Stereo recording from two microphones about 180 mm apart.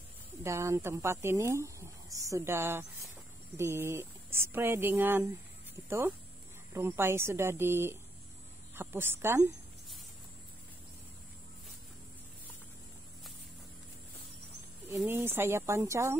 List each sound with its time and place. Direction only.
0.4 s speech: 15° right (ahead or behind)
15.0 s speech: 15° right (ahead or behind)